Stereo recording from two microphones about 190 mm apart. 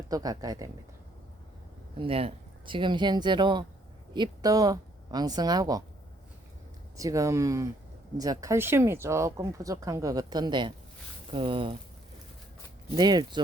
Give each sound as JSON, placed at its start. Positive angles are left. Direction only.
{"t": 0.1, "sound": "speech", "side_deg": -20}
{"t": 2.0, "sound": "speech", "side_deg": -30}
{"t": 6.9, "sound": "speech", "side_deg": -15}
{"t": 13.0, "sound": "speech", "side_deg": -20}